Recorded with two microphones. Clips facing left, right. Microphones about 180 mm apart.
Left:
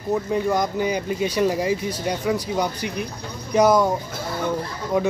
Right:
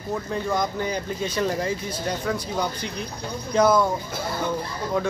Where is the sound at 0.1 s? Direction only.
15° left (ahead or behind).